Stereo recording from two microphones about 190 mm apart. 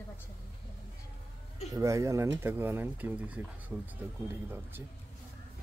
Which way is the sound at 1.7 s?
15° right (ahead or behind).